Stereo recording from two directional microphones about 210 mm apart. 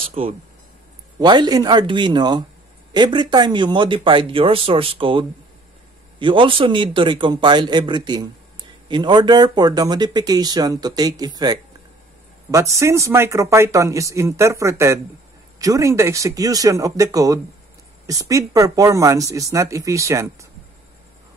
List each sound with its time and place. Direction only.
0.1 s speech: 30° right (ahead or behind)